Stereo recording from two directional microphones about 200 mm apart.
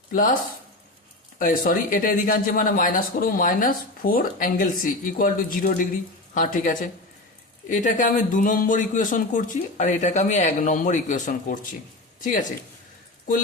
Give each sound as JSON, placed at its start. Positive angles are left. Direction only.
{"t": 0.1, "sound": "speech", "side_deg": 45}
{"t": 1.4, "sound": "speech", "side_deg": 40}